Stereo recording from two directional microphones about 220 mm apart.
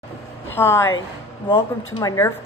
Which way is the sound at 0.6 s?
10° left (ahead or behind).